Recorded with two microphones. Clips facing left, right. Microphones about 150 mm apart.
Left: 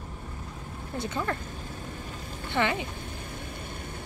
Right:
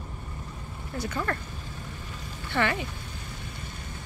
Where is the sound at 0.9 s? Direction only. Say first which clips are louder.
Even; 25° left (ahead or behind).